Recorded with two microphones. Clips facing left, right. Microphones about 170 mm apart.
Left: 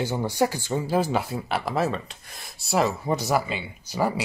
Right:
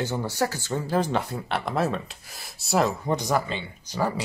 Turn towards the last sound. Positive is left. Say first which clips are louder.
# left 2 dB
turn(degrees=10)  # may be behind; listen again after turning